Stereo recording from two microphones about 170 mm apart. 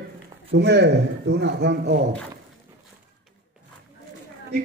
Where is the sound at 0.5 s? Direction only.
85° right.